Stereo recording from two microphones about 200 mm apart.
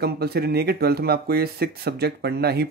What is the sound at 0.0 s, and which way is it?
Speech, 55° right (ahead or behind).